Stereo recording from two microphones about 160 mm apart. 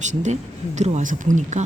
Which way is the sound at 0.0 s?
50° right (ahead or behind).